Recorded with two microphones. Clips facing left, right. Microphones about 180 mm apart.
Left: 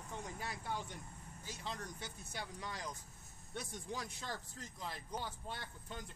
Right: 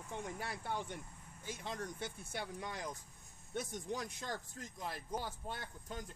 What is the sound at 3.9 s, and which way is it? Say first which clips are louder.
Speech: right 1 dB; 50° right (ahead or behind).